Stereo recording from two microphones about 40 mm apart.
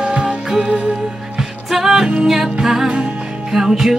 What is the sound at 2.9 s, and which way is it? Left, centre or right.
Music, right.